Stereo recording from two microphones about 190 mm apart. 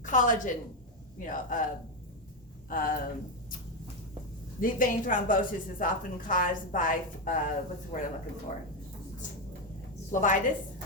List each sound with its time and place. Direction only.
0.0 s a woman's voice: 40° left (ahead or behind)
2.6 s speech: 50° left (ahead or behind)
4.6 s speech: 45° left (ahead or behind)
10.1 s speech: 40° left (ahead or behind)